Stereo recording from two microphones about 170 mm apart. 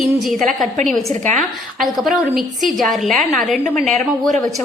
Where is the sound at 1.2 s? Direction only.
45° right (ahead or behind).